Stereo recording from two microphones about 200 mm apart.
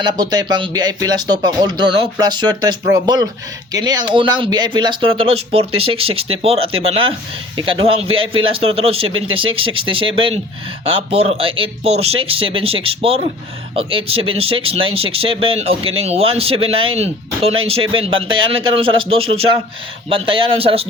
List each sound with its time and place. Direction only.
0.0 s speech: 20° right (ahead or behind)
9.0 s speech: 90° right
9.3 s speech: 25° right (ahead or behind)